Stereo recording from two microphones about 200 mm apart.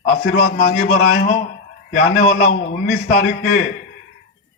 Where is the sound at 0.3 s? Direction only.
45° left (ahead or behind).